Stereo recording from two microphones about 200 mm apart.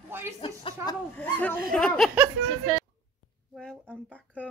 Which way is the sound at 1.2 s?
10° left (ahead or behind).